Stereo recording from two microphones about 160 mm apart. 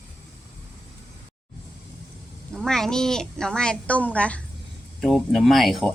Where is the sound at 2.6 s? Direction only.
5° left (ahead or behind).